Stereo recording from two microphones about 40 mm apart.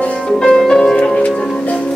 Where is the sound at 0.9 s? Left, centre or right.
Left.